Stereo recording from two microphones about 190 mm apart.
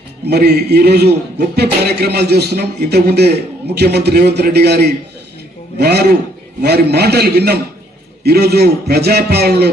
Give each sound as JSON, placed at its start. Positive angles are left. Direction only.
{"t": 0.3, "sound": "a man's voice", "side_deg": -60}